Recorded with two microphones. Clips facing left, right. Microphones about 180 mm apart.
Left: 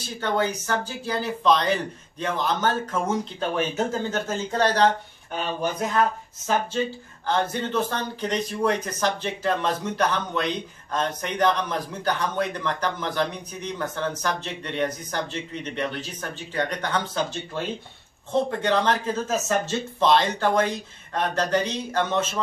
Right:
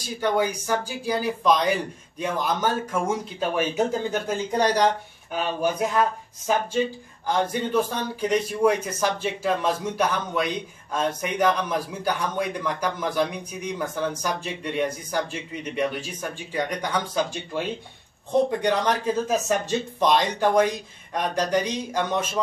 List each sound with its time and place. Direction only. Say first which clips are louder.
0.0 s a man's voice: right 2 dB; 10° right (ahead or behind)
7.2 s a man's voice: right 1 dB; 10° right (ahead or behind)